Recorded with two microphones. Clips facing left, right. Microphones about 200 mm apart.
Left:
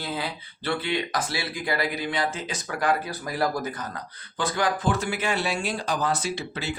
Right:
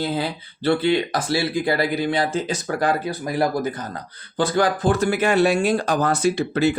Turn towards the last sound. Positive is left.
turn(degrees=-50)  # may be behind; listen again after turning